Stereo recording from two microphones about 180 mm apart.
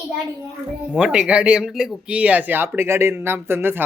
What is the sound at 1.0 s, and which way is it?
Speech, 5° right (ahead or behind).